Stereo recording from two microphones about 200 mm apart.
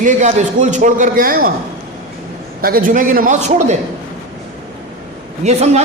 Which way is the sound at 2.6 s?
45° right (ahead or behind).